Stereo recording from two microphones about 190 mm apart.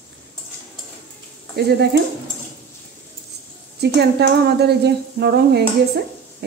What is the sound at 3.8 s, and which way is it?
Speech, 60° right (ahead or behind).